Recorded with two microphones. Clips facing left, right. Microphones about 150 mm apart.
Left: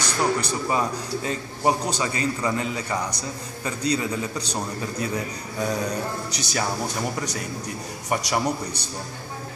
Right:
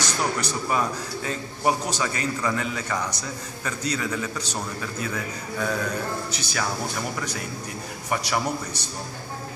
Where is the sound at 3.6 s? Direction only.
30° left (ahead or behind).